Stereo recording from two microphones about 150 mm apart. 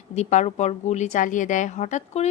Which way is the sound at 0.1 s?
50° left (ahead or behind).